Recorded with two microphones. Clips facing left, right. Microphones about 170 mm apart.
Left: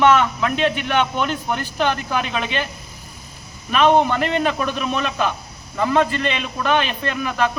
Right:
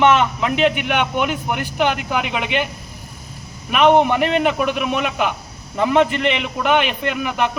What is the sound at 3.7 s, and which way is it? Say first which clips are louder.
A man's voice: right 2 dB; 15° right (ahead or behind).